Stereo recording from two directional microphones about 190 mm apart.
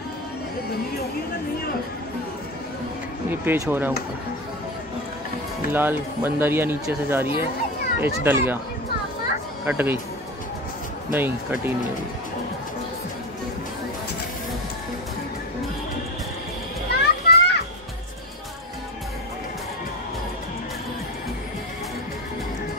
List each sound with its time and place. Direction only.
3.3 s speech: 15° right (ahead or behind)
5.7 s speech: 10° right (ahead or behind)
9.7 s speech: 10° right (ahead or behind)
11.1 s speech: 10° right (ahead or behind)
16.9 s children playing: 60° left (ahead or behind)